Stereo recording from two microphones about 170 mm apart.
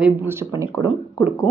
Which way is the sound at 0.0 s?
15° right (ahead or behind).